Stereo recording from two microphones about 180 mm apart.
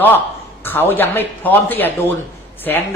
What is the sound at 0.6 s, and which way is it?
Speech, 10° left (ahead or behind).